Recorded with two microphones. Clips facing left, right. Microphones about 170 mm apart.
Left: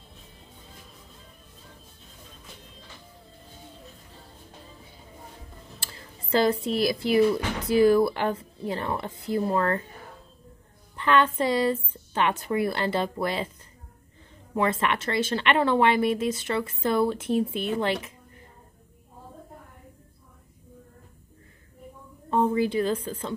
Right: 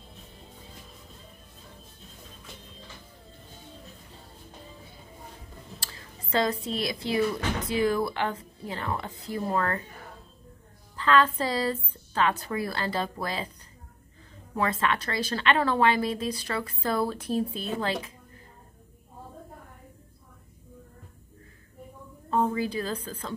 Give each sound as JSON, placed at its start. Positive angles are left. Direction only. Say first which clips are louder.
{"t": 5.9, "sound": "a woman's voice", "louder": "left 6 dB", "side_deg": 30}
{"t": 11.0, "sound": "speech", "louder": "left 1 dB", "side_deg": 25}
{"t": 14.6, "sound": "speech", "louder": "left 2 dB", "side_deg": 25}
{"t": 22.3, "sound": "speech", "louder": "left 3 dB", "side_deg": 25}